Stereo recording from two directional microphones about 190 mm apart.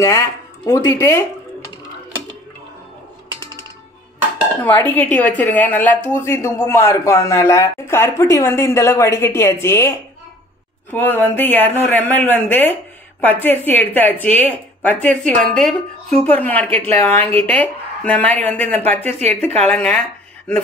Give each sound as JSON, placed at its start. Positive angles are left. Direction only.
{"t": 0.0, "sound": "speech", "side_deg": 15}
{"t": 4.6, "sound": "speech", "side_deg": 10}
{"t": 19.0, "sound": "speech", "side_deg": -35}
{"t": 19.6, "sound": "speech", "side_deg": 5}